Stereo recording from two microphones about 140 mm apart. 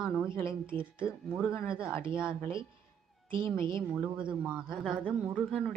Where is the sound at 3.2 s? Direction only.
35° right (ahead or behind).